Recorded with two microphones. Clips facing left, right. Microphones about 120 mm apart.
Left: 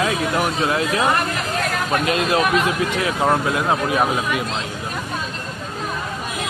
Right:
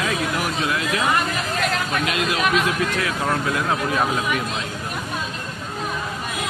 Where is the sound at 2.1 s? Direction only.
30° left (ahead or behind).